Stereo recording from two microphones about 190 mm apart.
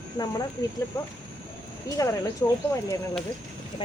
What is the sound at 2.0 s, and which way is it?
Speech, 15° left (ahead or behind).